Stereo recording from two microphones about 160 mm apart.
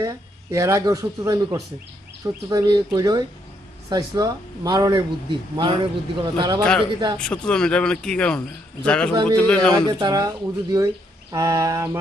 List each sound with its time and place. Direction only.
0.0 s speech: 20° right (ahead or behind)
6.6 s speech: 5° left (ahead or behind)
9.7 s speech: 25° right (ahead or behind)